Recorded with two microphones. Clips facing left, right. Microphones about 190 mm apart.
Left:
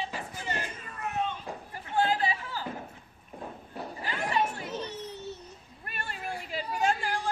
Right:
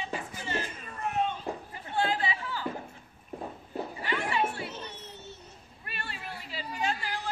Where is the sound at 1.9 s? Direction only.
40° left (ahead or behind).